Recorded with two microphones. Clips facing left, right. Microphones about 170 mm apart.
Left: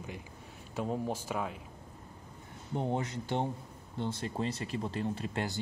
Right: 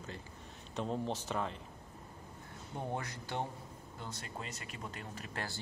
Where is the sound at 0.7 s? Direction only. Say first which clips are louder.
Left 3 dB; 10° left (ahead or behind).